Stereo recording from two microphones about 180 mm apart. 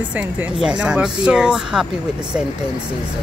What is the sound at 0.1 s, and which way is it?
Speech, 5° right (ahead or behind).